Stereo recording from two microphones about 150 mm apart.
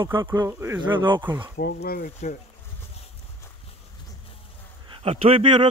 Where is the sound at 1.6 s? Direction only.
90° left.